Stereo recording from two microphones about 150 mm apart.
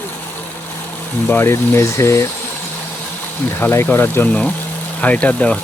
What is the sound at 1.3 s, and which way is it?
Speech, 15° left (ahead or behind).